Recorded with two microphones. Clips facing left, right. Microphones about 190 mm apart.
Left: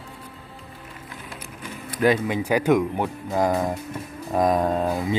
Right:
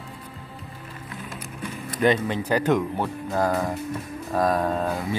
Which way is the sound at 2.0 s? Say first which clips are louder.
Left 1 dB; 10° left (ahead or behind).